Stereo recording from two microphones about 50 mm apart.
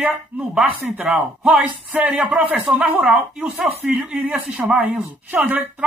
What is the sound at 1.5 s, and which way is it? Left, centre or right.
Speech, right.